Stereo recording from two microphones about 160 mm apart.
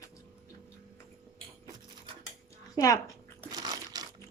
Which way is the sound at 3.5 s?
25° right (ahead or behind).